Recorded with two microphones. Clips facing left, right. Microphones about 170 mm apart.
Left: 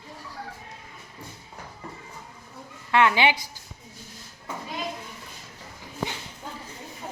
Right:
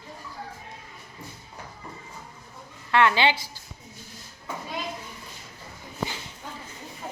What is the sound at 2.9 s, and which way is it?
Speech, 15° left (ahead or behind).